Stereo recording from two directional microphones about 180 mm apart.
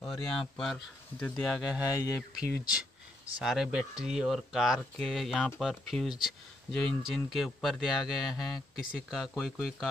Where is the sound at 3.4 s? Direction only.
5° right (ahead or behind).